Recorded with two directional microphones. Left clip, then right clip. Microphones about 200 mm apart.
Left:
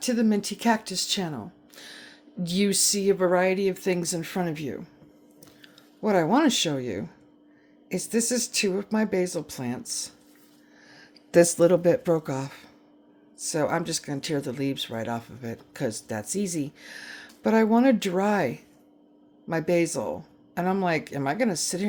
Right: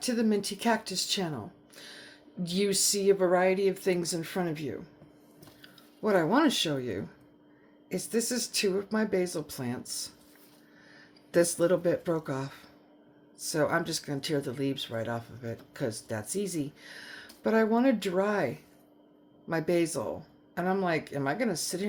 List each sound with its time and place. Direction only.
0.0 s speech: 20° left (ahead or behind)